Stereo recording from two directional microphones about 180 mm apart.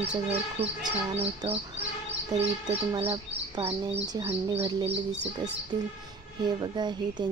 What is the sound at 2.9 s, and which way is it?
Speech, 35° right (ahead or behind).